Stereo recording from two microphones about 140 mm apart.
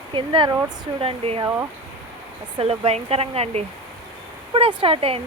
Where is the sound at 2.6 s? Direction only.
45° right (ahead or behind).